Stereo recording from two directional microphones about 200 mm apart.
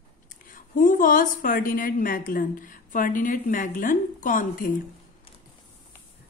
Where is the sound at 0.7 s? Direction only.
40° left (ahead or behind).